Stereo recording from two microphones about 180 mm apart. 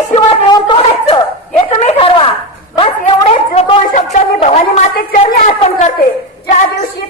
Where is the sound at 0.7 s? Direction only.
30° left (ahead or behind).